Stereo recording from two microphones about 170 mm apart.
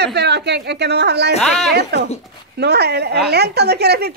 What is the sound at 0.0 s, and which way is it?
A woman's voice, 80° right.